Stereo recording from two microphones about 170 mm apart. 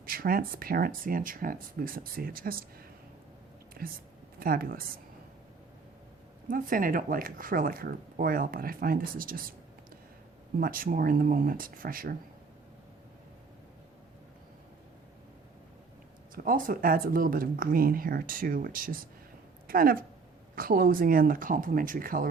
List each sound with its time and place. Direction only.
0.0 s speech: 55° right (ahead or behind)
3.8 s speech: 65° right (ahead or behind)
6.5 s speech: 55° right (ahead or behind)
10.6 s speech: 55° right (ahead or behind)
16.3 s speech: 55° right (ahead or behind)